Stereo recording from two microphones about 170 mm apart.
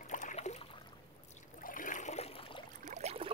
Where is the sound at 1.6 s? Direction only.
50° left (ahead or behind).